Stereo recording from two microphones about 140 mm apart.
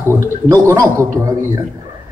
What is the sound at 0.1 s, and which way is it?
Speech, 20° right (ahead or behind).